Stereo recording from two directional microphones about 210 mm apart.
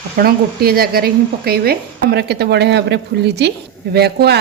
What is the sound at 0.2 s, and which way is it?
Speech, 45° right (ahead or behind).